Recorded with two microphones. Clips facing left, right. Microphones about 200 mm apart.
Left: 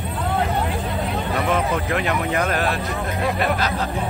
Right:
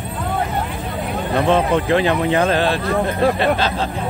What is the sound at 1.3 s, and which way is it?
Speech, 30° right (ahead or behind).